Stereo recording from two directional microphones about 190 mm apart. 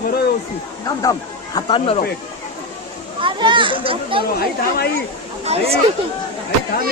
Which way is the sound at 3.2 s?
25° right (ahead or behind).